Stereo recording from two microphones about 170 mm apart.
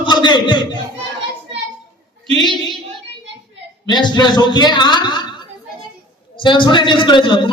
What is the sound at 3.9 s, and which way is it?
A woman's voice, 25° left (ahead or behind).